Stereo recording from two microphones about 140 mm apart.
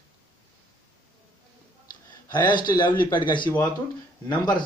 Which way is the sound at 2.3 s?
35° left (ahead or behind).